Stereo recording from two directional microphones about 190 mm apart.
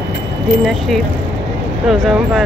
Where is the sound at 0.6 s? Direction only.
Centre (ahead or behind).